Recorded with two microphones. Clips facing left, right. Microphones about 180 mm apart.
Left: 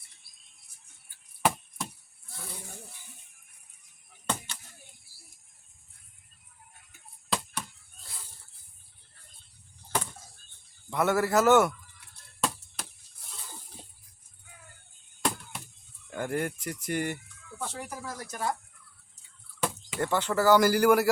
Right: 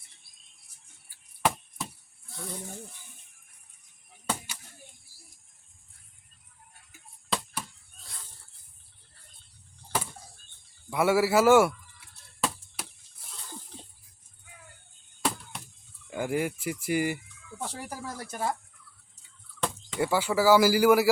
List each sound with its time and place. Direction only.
1.4 s chop: centre (ahead or behind)
7.3 s a sound: centre (ahead or behind)
10.8 s speech: 10° right (ahead or behind)
12.4 s chop: centre (ahead or behind)
15.2 s chop: centre (ahead or behind)
16.0 s speech: 5° right (ahead or behind)
17.7 s speech: 35° right (ahead or behind)
19.5 s a sound: 5° left (ahead or behind)
20.0 s speech: 10° right (ahead or behind)